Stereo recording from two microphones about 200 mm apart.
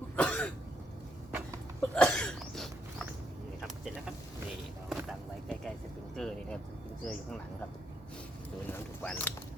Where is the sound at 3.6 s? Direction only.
5° right (ahead or behind).